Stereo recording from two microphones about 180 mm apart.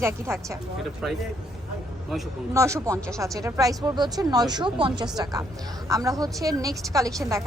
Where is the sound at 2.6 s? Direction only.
15° right (ahead or behind).